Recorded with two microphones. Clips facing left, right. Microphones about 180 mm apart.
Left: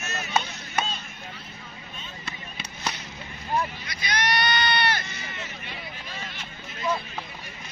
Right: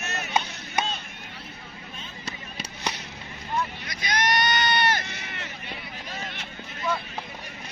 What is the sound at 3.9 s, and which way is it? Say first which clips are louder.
Sheep: right 1 dB; 45° right (ahead or behind).